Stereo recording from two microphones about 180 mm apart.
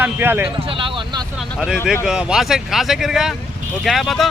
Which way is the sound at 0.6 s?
30° right (ahead or behind).